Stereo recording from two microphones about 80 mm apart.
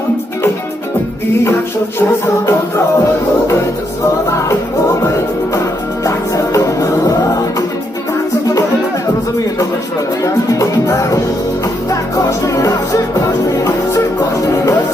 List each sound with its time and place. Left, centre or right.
2.0 s music: left
6.1 s music: left
11.9 s music: left